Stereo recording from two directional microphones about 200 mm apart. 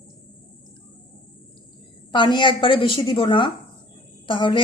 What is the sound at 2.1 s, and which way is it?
A woman's voice, 25° left (ahead or behind).